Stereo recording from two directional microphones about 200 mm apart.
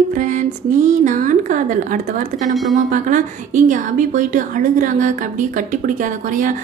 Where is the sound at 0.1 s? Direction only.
40° right (ahead or behind).